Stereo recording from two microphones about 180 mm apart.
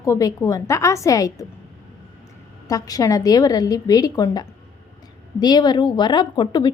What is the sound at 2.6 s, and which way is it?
A woman's voice, 20° left (ahead or behind).